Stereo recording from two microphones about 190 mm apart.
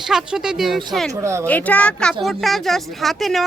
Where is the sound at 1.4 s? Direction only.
10° left (ahead or behind).